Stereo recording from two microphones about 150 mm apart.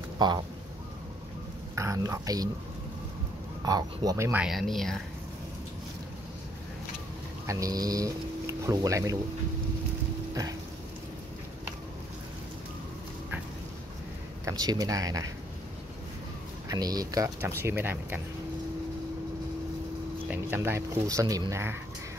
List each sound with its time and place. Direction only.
1.8 s speech: 20° right (ahead or behind)
3.6 s speech: 25° right (ahead or behind)
4.3 s speech: 5° right (ahead or behind)
7.4 s speech: 25° right (ahead or behind)
14.4 s speech: 25° right (ahead or behind)
16.6 s speech: 25° right (ahead or behind)
20.2 s speech: 15° right (ahead or behind)